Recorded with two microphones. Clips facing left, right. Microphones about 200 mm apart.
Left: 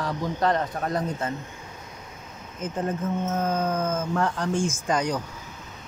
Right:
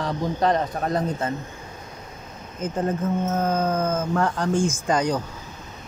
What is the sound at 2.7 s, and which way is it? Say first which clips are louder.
Speech: right 3 dB; 40° right (ahead or behind).